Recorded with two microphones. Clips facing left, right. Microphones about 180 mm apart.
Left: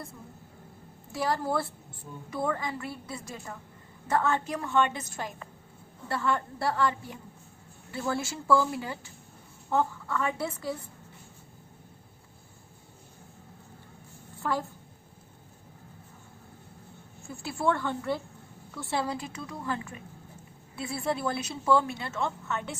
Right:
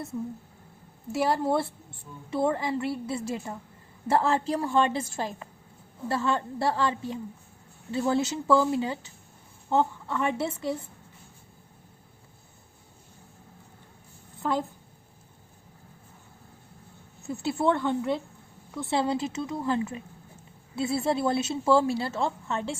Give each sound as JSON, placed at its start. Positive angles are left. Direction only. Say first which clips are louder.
{"t": 1.1, "sound": "a woman's voice", "louder": "right 4 dB", "side_deg": -25}
{"t": 17.2, "sound": "speech", "louder": "right 4 dB", "side_deg": -20}